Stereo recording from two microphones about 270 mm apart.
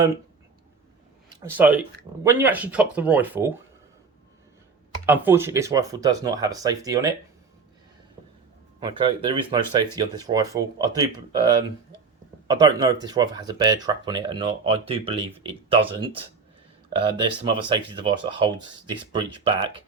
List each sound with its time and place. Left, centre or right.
1.4 s speech: centre
5.0 s speech: centre
8.8 s speech: centre